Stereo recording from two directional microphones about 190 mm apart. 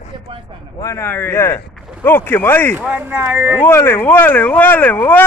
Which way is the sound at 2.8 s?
5° right (ahead or behind).